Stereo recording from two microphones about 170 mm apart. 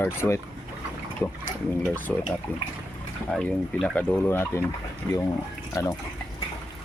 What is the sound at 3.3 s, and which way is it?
Speech, 5° left (ahead or behind).